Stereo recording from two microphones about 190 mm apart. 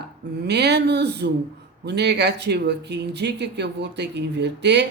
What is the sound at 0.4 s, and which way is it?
Speech, 60° right (ahead or behind).